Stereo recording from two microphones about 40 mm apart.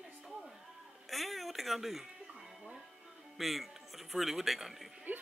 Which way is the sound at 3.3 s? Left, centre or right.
Centre.